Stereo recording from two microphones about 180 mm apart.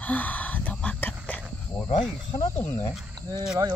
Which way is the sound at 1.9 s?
25° left (ahead or behind).